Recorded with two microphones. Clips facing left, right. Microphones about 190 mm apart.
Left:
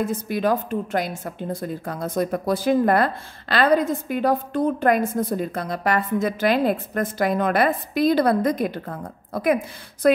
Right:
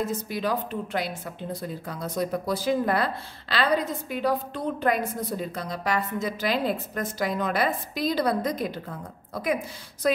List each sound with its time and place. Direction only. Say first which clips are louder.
0.0 s a woman's voice: left 5 dB; 55° left (ahead or behind)